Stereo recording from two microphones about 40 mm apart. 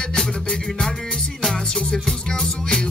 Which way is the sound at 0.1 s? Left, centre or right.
Centre.